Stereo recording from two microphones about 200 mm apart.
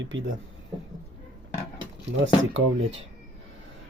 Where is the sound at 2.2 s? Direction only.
75° right (ahead or behind).